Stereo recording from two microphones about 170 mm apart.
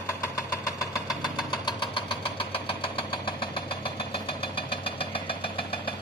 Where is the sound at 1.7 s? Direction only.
30° left (ahead or behind).